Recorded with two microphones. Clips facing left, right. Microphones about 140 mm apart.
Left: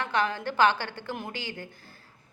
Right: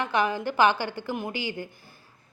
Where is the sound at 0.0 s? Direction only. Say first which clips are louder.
Right 3 dB; 15° right (ahead or behind).